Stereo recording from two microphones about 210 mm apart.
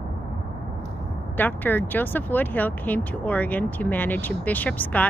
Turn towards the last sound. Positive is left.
turn(degrees=5)  # may be behind; listen again after turning